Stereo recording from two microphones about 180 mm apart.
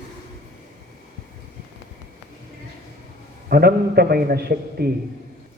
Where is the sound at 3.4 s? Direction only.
55° right (ahead or behind).